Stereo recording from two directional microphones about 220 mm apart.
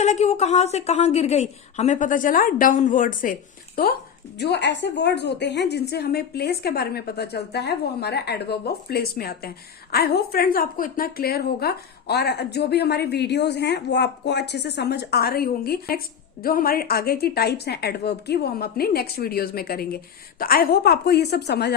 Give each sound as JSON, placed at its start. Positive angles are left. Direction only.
{"t": 0.0, "sound": "a woman's voice", "side_deg": 30}
{"t": 4.4, "sound": "a woman's voice", "side_deg": 50}